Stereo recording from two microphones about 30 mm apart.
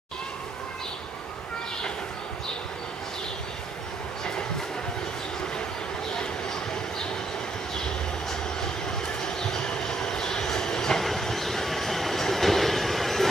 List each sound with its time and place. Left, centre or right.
6.1 s a sound: left
9.2 s train: left
11.0 s train: centre